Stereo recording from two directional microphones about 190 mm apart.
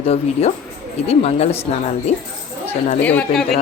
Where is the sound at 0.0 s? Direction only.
30° left (ahead or behind).